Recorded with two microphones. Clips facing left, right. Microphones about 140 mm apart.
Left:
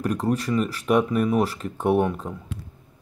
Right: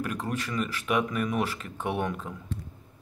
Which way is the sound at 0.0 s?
40° left (ahead or behind).